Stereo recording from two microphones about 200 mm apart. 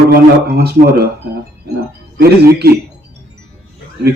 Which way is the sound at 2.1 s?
50° right (ahead or behind).